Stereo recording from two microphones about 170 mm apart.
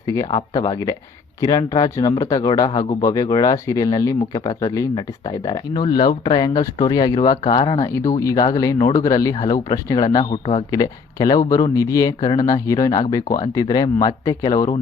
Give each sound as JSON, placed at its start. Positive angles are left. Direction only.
{"t": 0.0, "sound": "speech", "side_deg": 20}
{"t": 7.9, "sound": "speech", "side_deg": 15}